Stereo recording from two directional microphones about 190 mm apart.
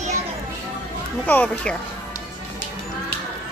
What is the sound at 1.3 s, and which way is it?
Speech, 10° left (ahead or behind).